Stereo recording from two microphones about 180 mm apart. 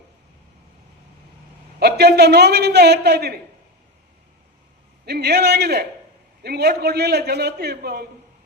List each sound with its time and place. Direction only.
1.8 s a man's voice: 65° right (ahead or behind)
5.0 s a man's voice: 65° right (ahead or behind)